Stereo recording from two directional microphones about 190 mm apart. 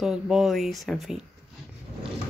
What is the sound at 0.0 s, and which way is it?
Speech, centre (ahead or behind).